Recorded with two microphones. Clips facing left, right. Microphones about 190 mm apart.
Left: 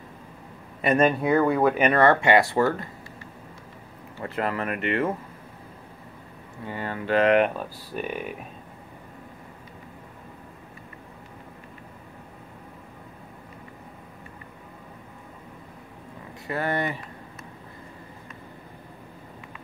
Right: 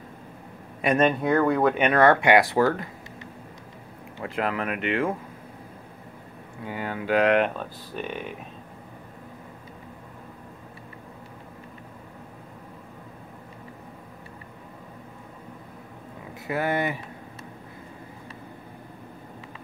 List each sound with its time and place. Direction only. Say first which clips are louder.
0.8 s speech: left 1 dB; 5° left (ahead or behind)
4.2 s speech: even; centre (ahead or behind)
6.6 s speech: even; 5° right (ahead or behind)
16.4 s speech: right 1 dB; 5° right (ahead or behind)